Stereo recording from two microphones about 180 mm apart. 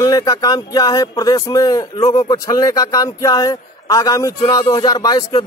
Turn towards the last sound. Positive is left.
turn(degrees=20)  # may be behind; listen again after turning